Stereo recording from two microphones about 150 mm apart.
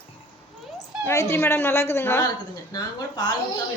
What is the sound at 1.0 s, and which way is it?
Speech, 20° left (ahead or behind).